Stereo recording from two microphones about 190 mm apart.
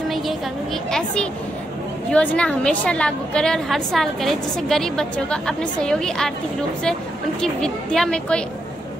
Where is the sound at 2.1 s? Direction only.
5° left (ahead or behind).